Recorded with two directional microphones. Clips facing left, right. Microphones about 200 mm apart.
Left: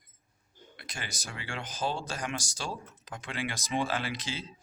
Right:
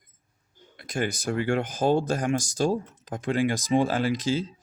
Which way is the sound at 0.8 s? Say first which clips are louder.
Right 15 dB; 50° right (ahead or behind).